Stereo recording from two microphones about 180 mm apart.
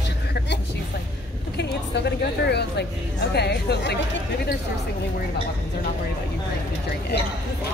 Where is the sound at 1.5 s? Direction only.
65° left (ahead or behind).